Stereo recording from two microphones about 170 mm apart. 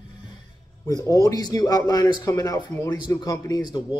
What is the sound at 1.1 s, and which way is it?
Speech, 20° left (ahead or behind).